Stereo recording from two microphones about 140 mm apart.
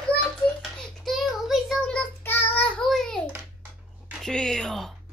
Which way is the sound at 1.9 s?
10° left (ahead or behind).